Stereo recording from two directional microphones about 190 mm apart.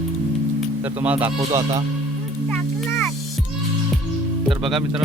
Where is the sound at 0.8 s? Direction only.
10° right (ahead or behind).